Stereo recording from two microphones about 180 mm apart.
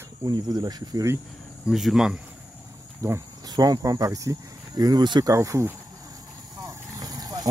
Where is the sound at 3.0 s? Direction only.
15° right (ahead or behind).